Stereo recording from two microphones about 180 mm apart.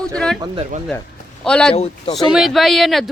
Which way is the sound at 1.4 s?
5° left (ahead or behind).